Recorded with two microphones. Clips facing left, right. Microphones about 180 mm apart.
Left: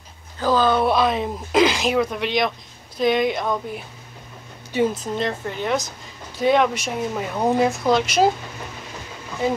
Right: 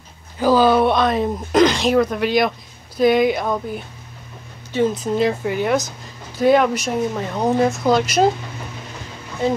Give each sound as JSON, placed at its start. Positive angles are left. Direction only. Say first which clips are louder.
{"t": 0.4, "sound": "speech", "louder": "right 4 dB", "side_deg": -10}
{"t": 0.8, "sound": "speech", "louder": "right 2 dB", "side_deg": 0}
{"t": 4.9, "sound": "speech", "louder": "right 6 dB", "side_deg": -5}